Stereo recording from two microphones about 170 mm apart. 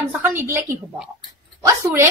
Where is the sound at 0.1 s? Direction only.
15° right (ahead or behind).